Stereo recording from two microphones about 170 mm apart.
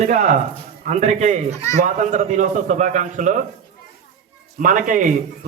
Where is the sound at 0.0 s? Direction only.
40° right (ahead or behind).